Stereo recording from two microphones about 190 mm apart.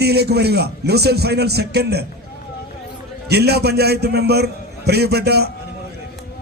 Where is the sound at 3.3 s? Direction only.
60° right (ahead or behind).